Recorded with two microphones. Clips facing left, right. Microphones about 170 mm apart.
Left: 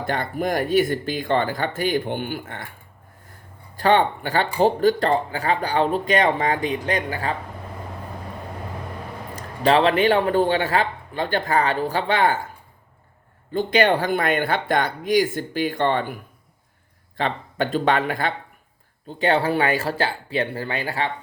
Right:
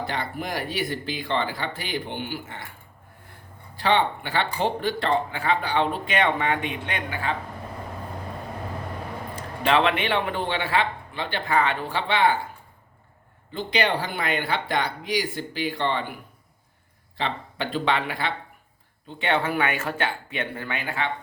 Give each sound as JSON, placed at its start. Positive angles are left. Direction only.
{"t": 0.0, "sound": "speech", "side_deg": 50}
{"t": 3.8, "sound": "speech", "side_deg": 45}
{"t": 9.3, "sound": "speech", "side_deg": 35}
{"t": 13.5, "sound": "speech", "side_deg": 50}
{"t": 17.2, "sound": "speech", "side_deg": 50}